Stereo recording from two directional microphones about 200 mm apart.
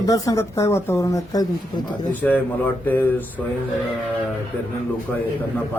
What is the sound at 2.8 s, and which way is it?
Speech, 10° left (ahead or behind).